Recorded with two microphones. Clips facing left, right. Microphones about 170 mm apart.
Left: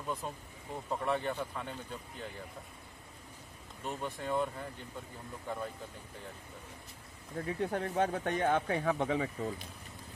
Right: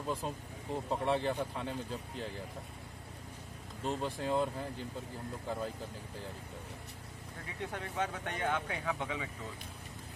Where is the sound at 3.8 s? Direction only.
30° right (ahead or behind).